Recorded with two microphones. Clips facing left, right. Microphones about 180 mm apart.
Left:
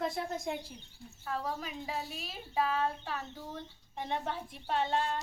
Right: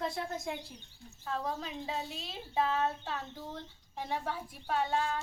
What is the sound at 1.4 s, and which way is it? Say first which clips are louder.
A woman's voice: right 1 dB; 20° right (ahead or behind).